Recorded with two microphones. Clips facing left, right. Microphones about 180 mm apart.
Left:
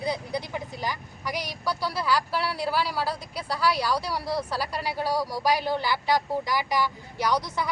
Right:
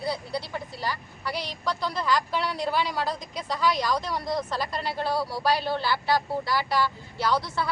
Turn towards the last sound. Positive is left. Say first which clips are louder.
# even
turn(degrees=15)  # may be behind; listen again after turning